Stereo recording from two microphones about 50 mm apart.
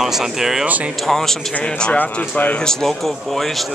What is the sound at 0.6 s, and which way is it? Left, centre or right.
Speech, right.